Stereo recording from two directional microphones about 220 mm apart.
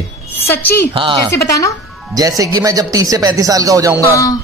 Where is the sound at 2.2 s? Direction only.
15° right (ahead or behind).